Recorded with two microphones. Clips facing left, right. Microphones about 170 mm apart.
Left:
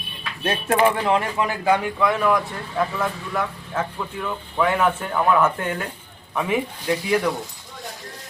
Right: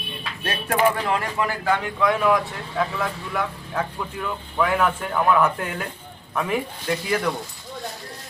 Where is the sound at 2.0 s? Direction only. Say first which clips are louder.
Even; centre (ahead or behind).